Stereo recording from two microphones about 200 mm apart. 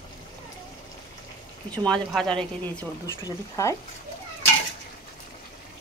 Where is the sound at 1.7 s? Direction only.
5° left (ahead or behind).